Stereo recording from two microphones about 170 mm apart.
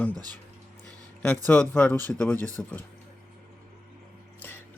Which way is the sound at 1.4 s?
10° left (ahead or behind).